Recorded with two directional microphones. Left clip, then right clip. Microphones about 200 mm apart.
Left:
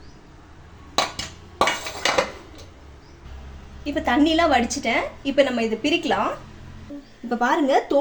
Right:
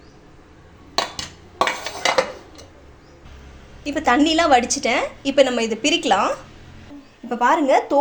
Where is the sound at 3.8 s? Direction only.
20° right (ahead or behind).